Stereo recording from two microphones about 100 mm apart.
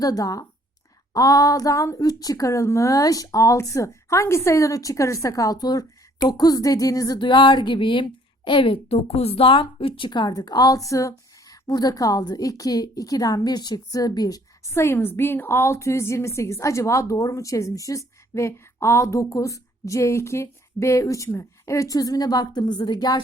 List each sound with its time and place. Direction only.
0.0 s speech: 35° left (ahead or behind)
7.2 s a woman's voice: 50° left (ahead or behind)
14.7 s a woman's voice: 25° left (ahead or behind); by 23.2 s 45° left (ahead or behind)